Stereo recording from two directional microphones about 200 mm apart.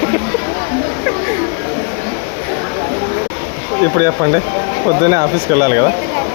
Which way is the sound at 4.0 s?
15° right (ahead or behind).